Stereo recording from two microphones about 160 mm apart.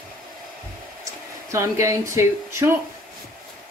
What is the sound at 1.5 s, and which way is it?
Speech, 20° right (ahead or behind).